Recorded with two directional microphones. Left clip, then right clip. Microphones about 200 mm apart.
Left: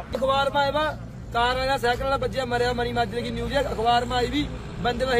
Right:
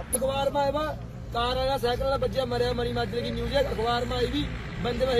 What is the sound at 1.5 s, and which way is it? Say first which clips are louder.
Speech: left 1 dB; 30° left (ahead or behind).